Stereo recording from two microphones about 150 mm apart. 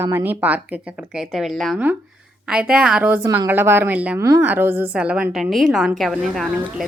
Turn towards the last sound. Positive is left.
turn(degrees=0)  # may be behind; listen again after turning